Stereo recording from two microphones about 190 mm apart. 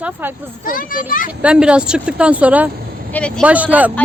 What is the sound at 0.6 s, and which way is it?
Speech, 45° left (ahead or behind).